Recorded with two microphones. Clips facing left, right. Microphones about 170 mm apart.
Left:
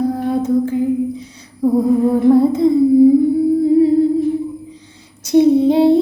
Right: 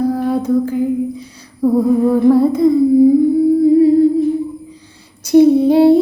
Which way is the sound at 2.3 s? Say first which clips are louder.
Even; 25° left (ahead or behind).